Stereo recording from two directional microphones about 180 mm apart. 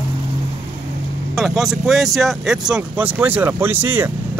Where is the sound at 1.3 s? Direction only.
Centre (ahead or behind).